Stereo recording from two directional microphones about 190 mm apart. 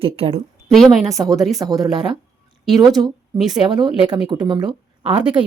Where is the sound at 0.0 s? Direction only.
30° right (ahead or behind).